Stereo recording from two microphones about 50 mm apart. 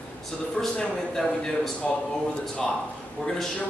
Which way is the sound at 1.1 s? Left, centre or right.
Centre.